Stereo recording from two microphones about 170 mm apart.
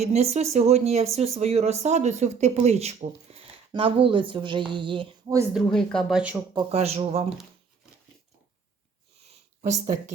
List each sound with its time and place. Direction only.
0.0 s speech: 40° right (ahead or behind)
5.5 s speech: 5° left (ahead or behind)
6.3 s speech: 20° right (ahead or behind)
6.7 s speech: 35° right (ahead or behind)
9.6 s speech: 50° right (ahead or behind)